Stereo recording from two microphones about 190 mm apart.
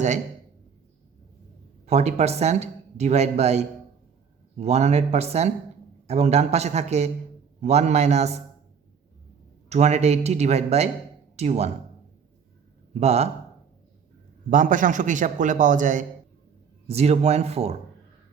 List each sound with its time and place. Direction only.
1.9 s speech: 35° right (ahead or behind)
9.6 s speech: 35° right (ahead or behind)
12.9 s speech: 35° right (ahead or behind)
14.5 s a man's voice: 45° right (ahead or behind)